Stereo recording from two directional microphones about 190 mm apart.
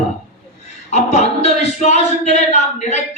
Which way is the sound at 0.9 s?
35° left (ahead or behind).